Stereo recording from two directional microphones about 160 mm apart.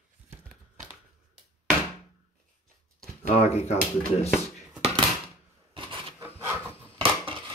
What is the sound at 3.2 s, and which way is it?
Speech, 40° left (ahead or behind).